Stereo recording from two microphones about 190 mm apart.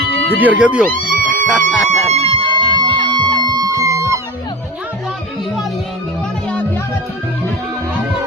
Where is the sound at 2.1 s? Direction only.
25° right (ahead or behind).